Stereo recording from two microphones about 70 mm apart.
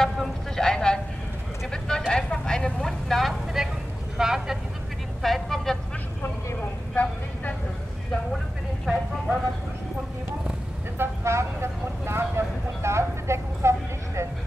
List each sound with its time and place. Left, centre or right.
0.0 s a sound: centre
1.7 s vehicle: centre
4.2 s speech: centre
6.9 s vehicle: left
8.9 s vehicle: centre
11.0 s vehicle: right